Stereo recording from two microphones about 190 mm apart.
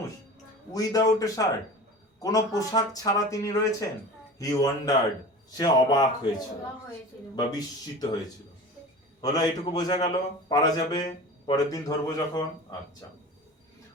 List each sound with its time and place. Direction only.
0.7 s a man's voice: 20° left (ahead or behind)
7.3 s a man's voice: 20° left (ahead or behind)
9.2 s a man's voice: 20° left (ahead or behind)